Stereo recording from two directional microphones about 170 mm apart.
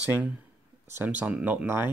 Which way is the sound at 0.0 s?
10° right (ahead or behind).